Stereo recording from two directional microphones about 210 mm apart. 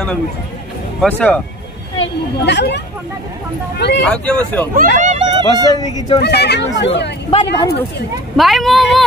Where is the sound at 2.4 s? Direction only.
55° left (ahead or behind).